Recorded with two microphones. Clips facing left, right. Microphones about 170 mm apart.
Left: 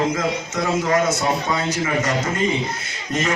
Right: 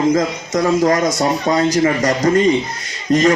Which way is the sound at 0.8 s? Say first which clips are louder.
Right 2 dB; 35° right (ahead or behind).